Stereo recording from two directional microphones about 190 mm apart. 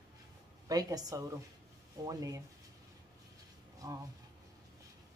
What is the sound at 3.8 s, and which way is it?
Speech, 20° right (ahead or behind).